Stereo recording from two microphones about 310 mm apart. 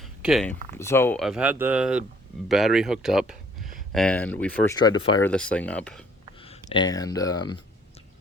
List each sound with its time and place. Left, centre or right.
0.0 s a sound: centre
0.8 s speech: centre
6.4 s speech: centre